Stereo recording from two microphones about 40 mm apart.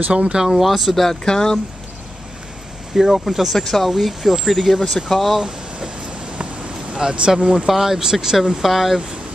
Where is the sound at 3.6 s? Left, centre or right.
Centre.